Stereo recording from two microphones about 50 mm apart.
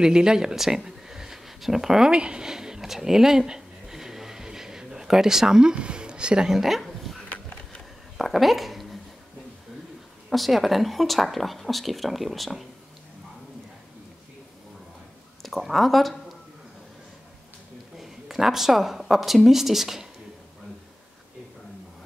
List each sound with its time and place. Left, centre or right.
0.0 s speech: centre
2.1 s a sound: centre
7.2 s a sound: left
8.2 s speech: centre
10.3 s speech: centre
15.4 s speech: centre
17.9 s a woman's voice: centre